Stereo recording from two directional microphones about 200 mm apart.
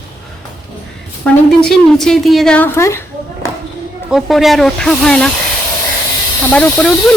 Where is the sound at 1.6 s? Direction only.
Centre (ahead or behind).